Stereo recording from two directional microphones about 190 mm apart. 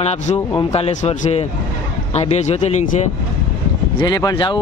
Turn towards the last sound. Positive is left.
turn(degrees=25)  # may be behind; listen again after turning